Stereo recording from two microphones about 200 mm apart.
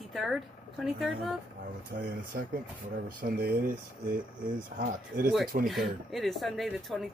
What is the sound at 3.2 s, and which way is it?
Speech, 45° right (ahead or behind).